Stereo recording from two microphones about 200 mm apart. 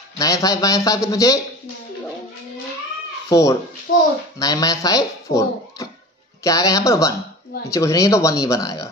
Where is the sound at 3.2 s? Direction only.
15° left (ahead or behind).